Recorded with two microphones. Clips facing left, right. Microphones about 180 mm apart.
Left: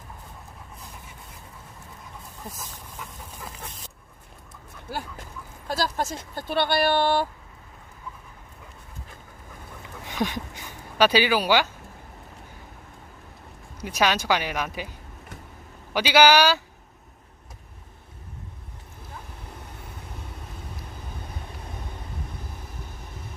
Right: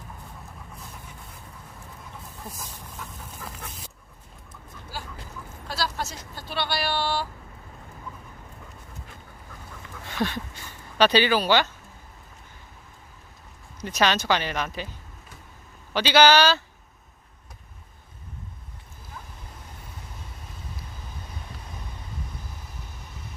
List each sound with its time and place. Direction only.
4.9 s speech: 55° left (ahead or behind)
10.1 s speech: 15° left (ahead or behind)
13.8 s speech: 10° left (ahead or behind)
15.9 s speech: 10° left (ahead or behind)